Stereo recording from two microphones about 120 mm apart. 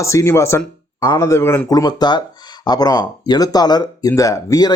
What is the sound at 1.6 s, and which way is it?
Speech, 30° left (ahead or behind).